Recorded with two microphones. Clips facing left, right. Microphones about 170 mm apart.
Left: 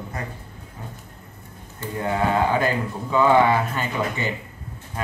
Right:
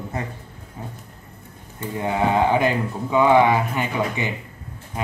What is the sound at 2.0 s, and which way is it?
A man's voice, 20° right (ahead or behind).